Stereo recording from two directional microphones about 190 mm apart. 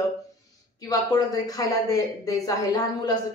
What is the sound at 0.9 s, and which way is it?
Speech, 20° left (ahead or behind).